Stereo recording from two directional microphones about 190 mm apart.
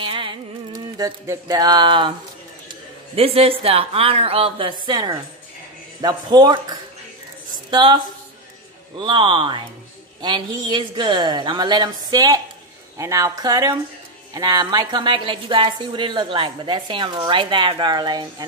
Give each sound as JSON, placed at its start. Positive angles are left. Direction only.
{"t": 0.0, "sound": "music", "side_deg": -25}
{"t": 3.2, "sound": "a woman's voice", "side_deg": -30}